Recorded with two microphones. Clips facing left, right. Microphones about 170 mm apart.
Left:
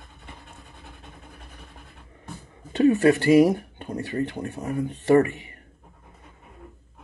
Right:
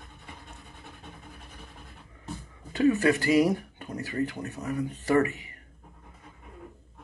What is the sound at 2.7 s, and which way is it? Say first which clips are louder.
Speech: left 5 dB; 25° left (ahead or behind).